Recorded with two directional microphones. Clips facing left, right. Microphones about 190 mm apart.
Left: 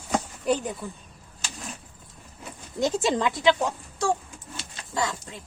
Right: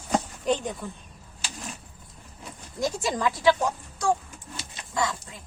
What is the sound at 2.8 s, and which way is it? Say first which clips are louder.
Speech: left 3 dB; 25° left (ahead or behind).